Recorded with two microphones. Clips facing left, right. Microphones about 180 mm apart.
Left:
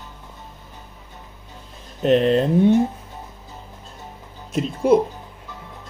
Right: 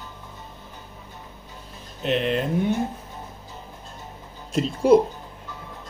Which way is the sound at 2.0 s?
40° left (ahead or behind).